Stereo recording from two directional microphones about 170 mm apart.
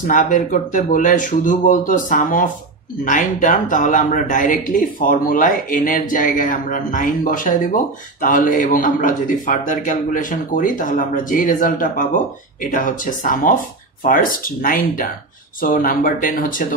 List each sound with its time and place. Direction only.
0.0 s speech: 50° left (ahead or behind)